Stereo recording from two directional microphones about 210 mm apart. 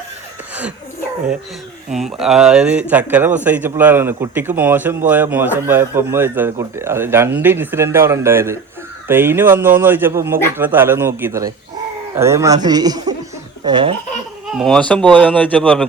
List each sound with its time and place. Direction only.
1.9 s speech: centre (ahead or behind); by 13.9 s 20° right (ahead or behind)
14.5 s speech: centre (ahead or behind)